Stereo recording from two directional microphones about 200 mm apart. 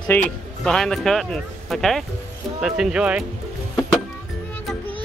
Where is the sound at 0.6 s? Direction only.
5° left (ahead or behind).